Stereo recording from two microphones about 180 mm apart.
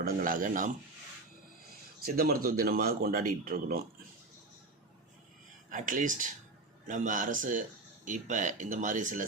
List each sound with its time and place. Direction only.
0.0 s speech: 55° right (ahead or behind)
2.1 s speech: 55° right (ahead or behind)
5.7 s speech: 50° right (ahead or behind)